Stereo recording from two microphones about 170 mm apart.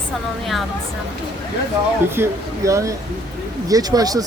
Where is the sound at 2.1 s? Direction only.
15° right (ahead or behind).